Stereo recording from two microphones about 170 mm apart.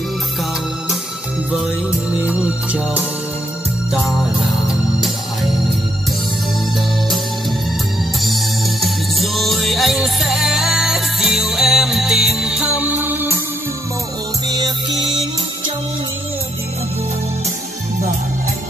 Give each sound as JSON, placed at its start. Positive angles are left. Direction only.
{"t": 2.2, "sound": "music", "side_deg": -10}
{"t": 8.2, "sound": "music", "side_deg": 0}